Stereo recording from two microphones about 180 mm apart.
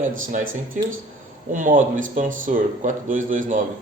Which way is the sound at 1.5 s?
45° right (ahead or behind).